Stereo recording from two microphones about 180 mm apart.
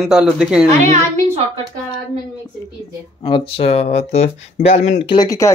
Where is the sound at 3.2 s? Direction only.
30° left (ahead or behind).